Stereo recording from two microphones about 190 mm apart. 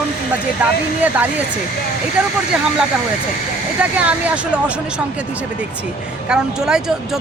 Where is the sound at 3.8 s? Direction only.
5° right (ahead or behind).